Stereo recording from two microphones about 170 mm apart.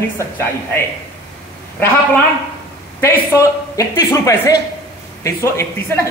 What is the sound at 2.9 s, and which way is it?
A man's voice, 15° left (ahead or behind).